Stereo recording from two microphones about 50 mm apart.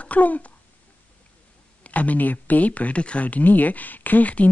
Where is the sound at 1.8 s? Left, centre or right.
Left.